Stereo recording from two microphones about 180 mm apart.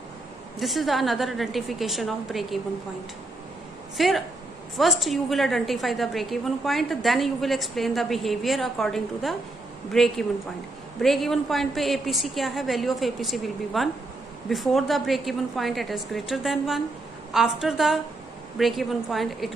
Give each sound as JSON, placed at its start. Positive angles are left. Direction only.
{"t": 0.6, "sound": "a woman's voice", "side_deg": 0}
{"t": 3.9, "sound": "a woman's voice", "side_deg": 0}